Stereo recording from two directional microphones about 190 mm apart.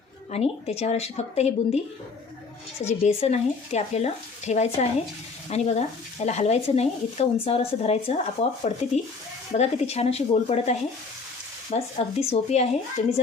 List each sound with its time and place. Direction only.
0.3 s speech: 35° left (ahead or behind)
2.8 s speech: 35° left (ahead or behind)